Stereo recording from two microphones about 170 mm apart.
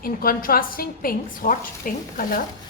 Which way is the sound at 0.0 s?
60° left (ahead or behind).